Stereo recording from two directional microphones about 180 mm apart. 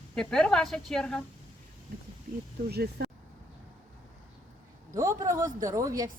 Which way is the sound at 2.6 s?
65° right (ahead or behind).